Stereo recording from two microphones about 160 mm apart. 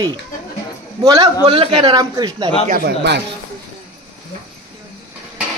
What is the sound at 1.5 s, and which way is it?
A man's voice, 30° right (ahead or behind).